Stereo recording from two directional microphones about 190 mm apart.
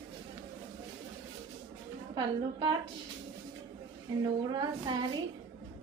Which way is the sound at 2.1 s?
25° right (ahead or behind).